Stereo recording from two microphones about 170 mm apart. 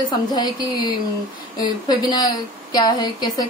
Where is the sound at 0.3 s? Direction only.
25° left (ahead or behind).